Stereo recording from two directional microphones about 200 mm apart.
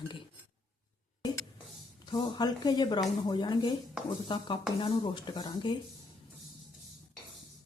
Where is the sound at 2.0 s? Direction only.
20° left (ahead or behind).